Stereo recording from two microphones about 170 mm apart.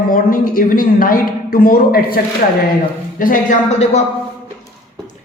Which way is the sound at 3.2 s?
55° left (ahead or behind).